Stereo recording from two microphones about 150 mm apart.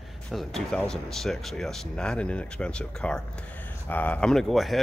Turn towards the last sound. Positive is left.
turn(degrees=0)  # may be behind; listen again after turning